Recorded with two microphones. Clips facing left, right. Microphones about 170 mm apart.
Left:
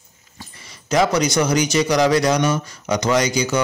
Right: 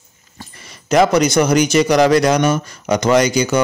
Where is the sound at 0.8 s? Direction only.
60° right (ahead or behind).